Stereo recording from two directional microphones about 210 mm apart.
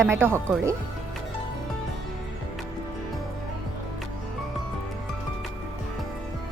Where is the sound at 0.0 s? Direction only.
10° right (ahead or behind).